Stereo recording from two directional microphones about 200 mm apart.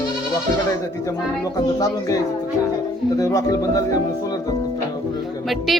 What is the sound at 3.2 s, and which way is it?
Speech, 15° left (ahead or behind).